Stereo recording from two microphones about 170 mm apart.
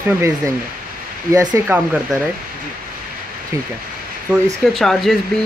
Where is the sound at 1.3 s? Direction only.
20° right (ahead or behind).